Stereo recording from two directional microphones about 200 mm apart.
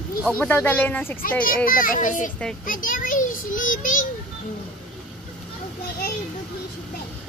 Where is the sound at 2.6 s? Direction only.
45° left (ahead or behind).